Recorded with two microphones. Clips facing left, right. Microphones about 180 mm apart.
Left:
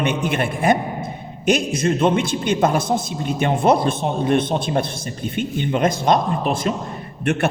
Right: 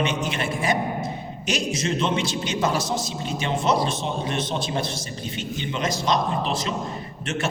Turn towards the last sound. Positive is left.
turn(degrees=60)  # may be behind; listen again after turning